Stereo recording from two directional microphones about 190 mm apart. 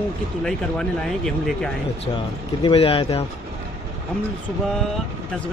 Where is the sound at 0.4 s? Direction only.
5° left (ahead or behind).